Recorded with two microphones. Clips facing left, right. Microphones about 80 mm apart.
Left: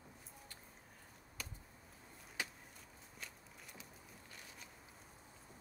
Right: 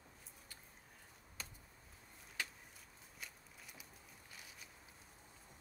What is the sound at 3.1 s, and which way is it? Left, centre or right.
Walk, centre.